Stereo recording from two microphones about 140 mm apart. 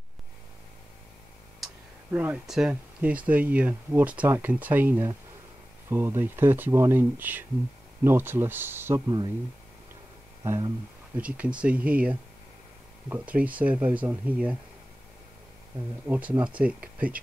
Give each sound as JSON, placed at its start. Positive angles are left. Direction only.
{"t": 1.6, "sound": "speech", "side_deg": -10}
{"t": 11.1, "sound": "speech", "side_deg": -10}
{"t": 16.1, "sound": "speech", "side_deg": -10}